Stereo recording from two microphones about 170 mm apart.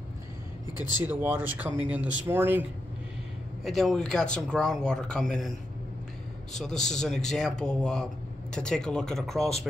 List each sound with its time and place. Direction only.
1.0 s speech: 10° right (ahead or behind)
3.6 s speech: centre (ahead or behind)
6.5 s speech: 5° left (ahead or behind)